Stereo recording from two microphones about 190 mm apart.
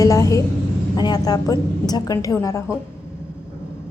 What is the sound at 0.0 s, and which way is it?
A woman's voice, 15° left (ahead or behind).